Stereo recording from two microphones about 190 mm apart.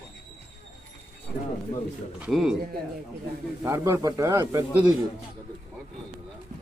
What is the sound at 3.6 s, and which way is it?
Speech, 15° right (ahead or behind).